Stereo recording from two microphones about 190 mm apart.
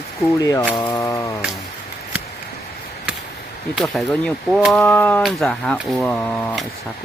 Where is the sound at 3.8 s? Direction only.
Centre (ahead or behind).